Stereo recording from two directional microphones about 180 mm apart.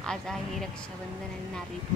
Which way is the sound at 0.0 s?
5° left (ahead or behind).